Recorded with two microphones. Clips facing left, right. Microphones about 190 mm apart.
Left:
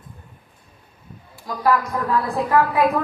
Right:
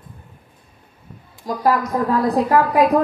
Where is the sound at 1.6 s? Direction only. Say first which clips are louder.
Right 2 dB; 40° right (ahead or behind).